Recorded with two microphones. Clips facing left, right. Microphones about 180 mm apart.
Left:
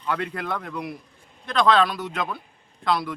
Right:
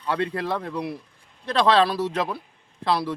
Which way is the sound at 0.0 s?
30° right (ahead or behind).